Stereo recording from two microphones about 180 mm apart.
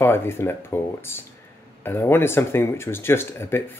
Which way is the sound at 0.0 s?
15° left (ahead or behind).